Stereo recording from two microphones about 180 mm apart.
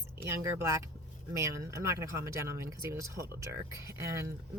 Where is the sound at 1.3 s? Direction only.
15° right (ahead or behind).